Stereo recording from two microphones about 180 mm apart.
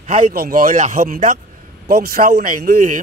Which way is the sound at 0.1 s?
55° right (ahead or behind).